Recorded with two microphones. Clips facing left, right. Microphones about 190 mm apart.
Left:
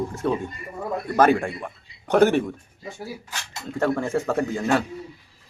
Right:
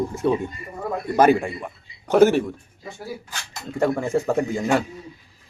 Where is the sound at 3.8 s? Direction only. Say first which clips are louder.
Right 2 dB; 10° right (ahead or behind).